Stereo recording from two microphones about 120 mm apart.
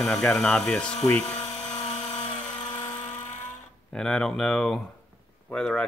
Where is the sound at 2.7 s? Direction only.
30° left (ahead or behind).